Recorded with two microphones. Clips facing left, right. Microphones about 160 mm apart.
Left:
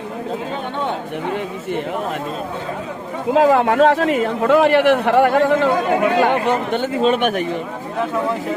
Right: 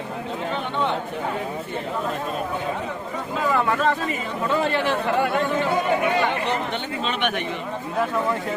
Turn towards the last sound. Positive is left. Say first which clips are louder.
# left 9 dB
turn(degrees=40)  # may be behind; listen again after turning